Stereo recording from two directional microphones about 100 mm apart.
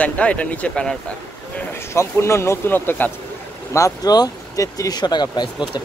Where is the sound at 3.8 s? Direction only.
35° left (ahead or behind).